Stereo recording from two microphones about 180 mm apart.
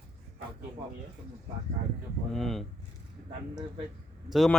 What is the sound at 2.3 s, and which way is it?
Speech, centre (ahead or behind).